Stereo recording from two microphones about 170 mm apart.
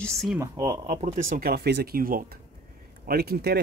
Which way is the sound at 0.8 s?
35° right (ahead or behind).